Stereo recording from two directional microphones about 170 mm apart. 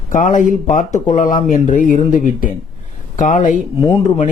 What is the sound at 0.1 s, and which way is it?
Speech, 50° left (ahead or behind).